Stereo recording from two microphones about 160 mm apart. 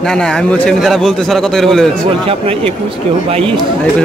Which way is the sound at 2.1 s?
35° right (ahead or behind).